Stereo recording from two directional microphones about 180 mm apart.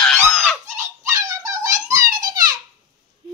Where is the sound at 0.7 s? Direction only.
15° right (ahead or behind).